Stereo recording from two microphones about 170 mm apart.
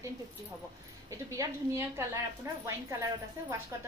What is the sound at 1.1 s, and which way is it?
A woman's voice, 20° right (ahead or behind).